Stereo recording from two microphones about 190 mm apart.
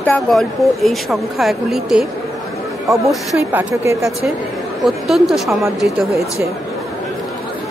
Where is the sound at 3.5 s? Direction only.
15° right (ahead or behind).